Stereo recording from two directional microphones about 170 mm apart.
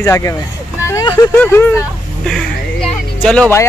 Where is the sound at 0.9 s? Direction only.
25° left (ahead or behind).